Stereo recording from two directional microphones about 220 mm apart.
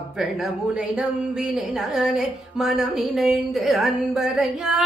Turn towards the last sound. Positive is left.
turn(degrees=0)  # may be behind; listen again after turning